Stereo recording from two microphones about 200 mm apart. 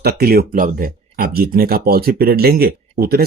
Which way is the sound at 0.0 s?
50° right (ahead or behind).